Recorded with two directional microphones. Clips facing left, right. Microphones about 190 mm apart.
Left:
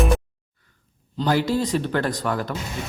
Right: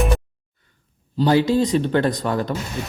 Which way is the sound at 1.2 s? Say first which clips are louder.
Right 4 dB; 20° right (ahead or behind).